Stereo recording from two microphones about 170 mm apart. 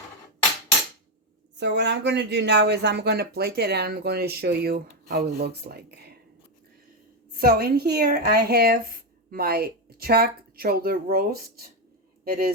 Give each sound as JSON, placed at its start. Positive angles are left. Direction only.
{"t": 1.5, "sound": "speech", "side_deg": -90}
{"t": 7.3, "sound": "a woman's voice", "side_deg": -65}